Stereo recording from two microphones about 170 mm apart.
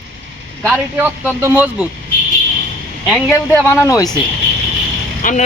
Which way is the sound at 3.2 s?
15° left (ahead or behind).